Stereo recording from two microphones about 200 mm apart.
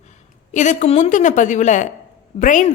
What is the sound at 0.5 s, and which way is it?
A woman's voice, 40° left (ahead or behind).